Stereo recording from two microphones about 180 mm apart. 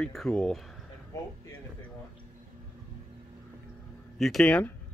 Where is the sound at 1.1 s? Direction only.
20° left (ahead or behind).